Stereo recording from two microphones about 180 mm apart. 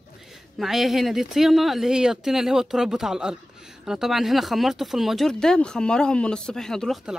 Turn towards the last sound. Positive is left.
turn(degrees=0)  # may be behind; listen again after turning